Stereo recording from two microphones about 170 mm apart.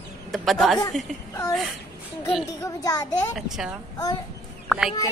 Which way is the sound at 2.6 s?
20° left (ahead or behind).